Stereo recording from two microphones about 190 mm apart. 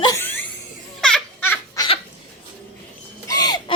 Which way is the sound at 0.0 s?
15° left (ahead or behind).